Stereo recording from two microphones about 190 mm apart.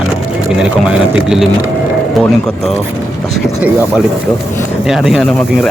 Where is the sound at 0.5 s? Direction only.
5° right (ahead or behind).